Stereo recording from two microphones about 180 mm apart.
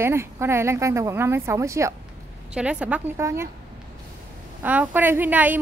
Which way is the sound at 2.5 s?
5° right (ahead or behind).